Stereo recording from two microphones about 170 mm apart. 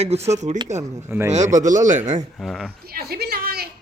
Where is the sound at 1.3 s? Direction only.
45° right (ahead or behind).